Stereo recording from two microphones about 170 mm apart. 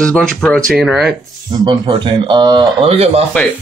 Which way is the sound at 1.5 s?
25° right (ahead or behind).